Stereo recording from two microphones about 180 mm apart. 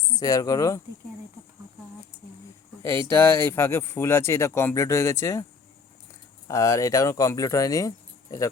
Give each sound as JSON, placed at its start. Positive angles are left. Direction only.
{"t": 0.2, "sound": "speech", "side_deg": 20}
{"t": 2.8, "sound": "speech", "side_deg": 15}
{"t": 6.5, "sound": "speech", "side_deg": 15}